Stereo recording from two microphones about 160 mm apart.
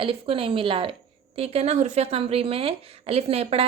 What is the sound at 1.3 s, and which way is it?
Speech, 40° right (ahead or behind).